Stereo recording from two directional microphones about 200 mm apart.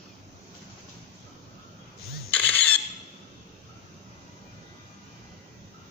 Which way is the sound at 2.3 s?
10° left (ahead or behind).